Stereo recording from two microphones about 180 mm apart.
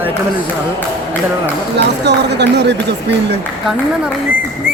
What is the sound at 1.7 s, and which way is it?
Speech, 70° right (ahead or behind).